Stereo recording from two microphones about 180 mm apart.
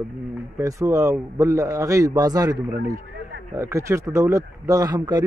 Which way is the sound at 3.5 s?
15° right (ahead or behind).